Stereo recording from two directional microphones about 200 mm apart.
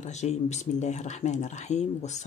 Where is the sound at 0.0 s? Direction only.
35° left (ahead or behind).